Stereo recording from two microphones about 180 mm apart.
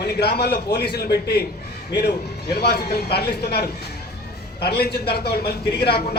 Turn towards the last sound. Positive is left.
turn(degrees=60)  # may be behind; listen again after turning